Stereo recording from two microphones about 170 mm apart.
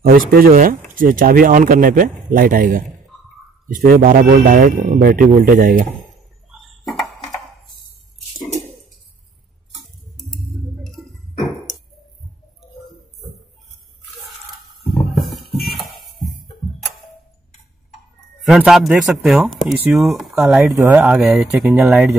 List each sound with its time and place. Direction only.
0.0 s speech: 55° right (ahead or behind)
9.8 s tick-tock: centre (ahead or behind)
11.0 s a sound: centre (ahead or behind)
15.5 s music: centre (ahead or behind)
18.4 s speech: centre (ahead or behind)
21.1 s speech: centre (ahead or behind)